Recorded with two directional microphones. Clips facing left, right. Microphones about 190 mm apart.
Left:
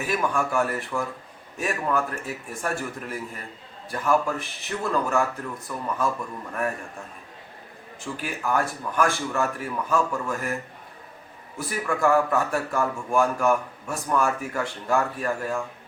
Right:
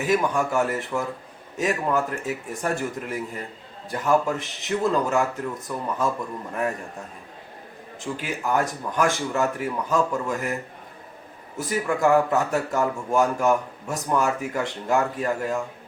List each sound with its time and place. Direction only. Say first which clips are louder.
0.1 s speech: right 3 dB; 20° right (ahead or behind)
8.0 s speech: right 2 dB; 20° right (ahead or behind)